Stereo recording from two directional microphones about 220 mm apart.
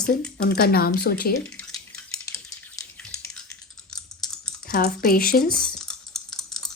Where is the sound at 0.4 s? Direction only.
45° left (ahead or behind).